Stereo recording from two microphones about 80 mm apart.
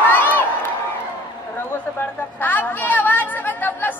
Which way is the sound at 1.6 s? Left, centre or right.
Left.